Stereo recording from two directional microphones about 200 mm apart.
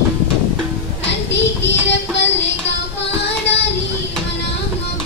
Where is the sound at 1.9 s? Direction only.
60° left (ahead or behind).